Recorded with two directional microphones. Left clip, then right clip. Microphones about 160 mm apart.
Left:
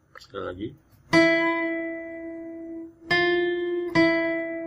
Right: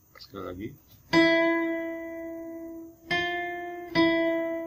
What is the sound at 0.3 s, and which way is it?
Speech, centre (ahead or behind).